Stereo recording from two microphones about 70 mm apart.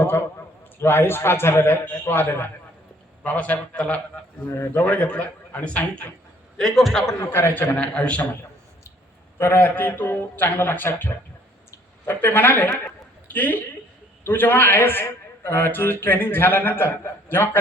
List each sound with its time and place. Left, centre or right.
0.8 s a man's voice: left
4.4 s a man's voice: left
4.9 s a man's voice: centre
6.6 s a man's voice: centre
7.2 s a man's voice: left
7.8 s a man's voice: centre
9.4 s a man's voice: left